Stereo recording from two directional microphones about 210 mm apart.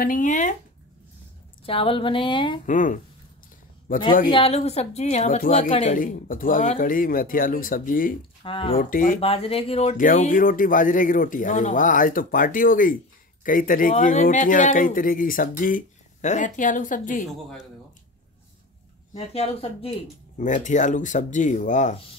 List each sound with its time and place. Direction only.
0.0 s speech: 40° left (ahead or behind)
1.7 s a sound: 25° left (ahead or behind)
2.6 s speech: 40° left (ahead or behind)
4.3 s speech: 30° left (ahead or behind)
5.9 s speech: 40° left (ahead or behind)
8.5 s a sound: 25° left (ahead or behind)
8.7 s speech: 40° left (ahead or behind)
9.2 s speech: 25° left (ahead or behind)
19.1 s a sound: 30° left (ahead or behind)
20.3 s speech: 35° left (ahead or behind)